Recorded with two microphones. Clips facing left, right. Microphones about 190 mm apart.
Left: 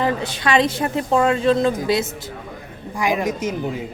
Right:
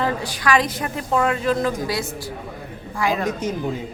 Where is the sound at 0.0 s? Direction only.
25° left (ahead or behind).